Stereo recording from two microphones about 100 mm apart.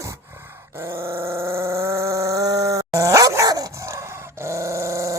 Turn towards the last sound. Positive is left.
turn(degrees=-30)  # may be behind; listen again after turning